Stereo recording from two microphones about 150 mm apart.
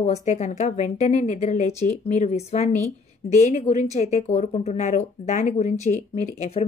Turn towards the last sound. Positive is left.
turn(degrees=40)  # may be behind; listen again after turning